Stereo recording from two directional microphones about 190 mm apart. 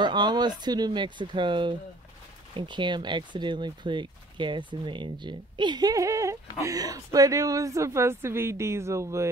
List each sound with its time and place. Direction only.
0.0 s speech: 25° right (ahead or behind)